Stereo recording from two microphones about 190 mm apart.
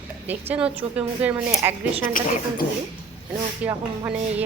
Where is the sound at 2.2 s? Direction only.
45° left (ahead or behind).